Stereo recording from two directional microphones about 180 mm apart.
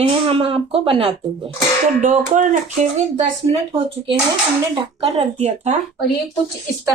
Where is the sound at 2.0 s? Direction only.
45° right (ahead or behind).